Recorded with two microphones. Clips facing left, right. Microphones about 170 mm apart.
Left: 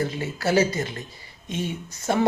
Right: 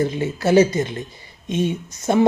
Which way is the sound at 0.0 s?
20° right (ahead or behind).